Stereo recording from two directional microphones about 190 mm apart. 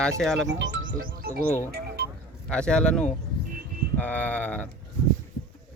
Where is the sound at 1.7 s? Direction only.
55° right (ahead or behind).